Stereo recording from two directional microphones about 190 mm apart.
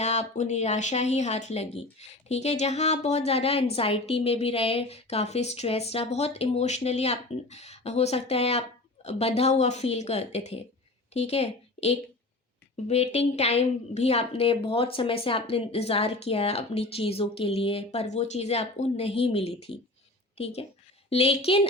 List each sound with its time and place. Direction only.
0.0 s a woman's voice: 35° left (ahead or behind)